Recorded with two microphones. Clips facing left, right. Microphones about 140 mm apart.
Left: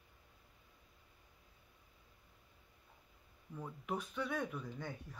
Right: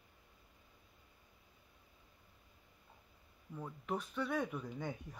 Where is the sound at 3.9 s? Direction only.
Centre (ahead or behind).